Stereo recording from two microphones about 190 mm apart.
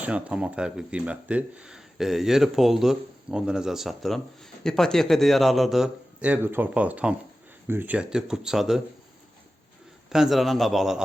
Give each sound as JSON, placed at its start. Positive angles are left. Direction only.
{"t": 0.0, "sound": "speech", "side_deg": -5}
{"t": 10.1, "sound": "speech", "side_deg": 0}